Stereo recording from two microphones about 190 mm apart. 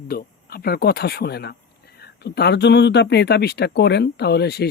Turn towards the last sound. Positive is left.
turn(degrees=60)  # may be behind; listen again after turning